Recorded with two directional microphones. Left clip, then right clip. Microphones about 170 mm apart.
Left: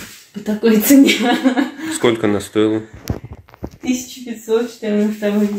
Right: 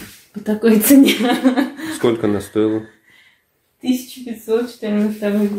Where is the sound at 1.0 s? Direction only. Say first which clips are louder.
Left 1 dB; 15° right (ahead or behind).